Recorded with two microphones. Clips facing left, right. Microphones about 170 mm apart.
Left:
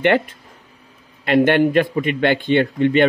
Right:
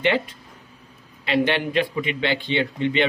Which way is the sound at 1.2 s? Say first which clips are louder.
Left 7 dB; 50° left (ahead or behind).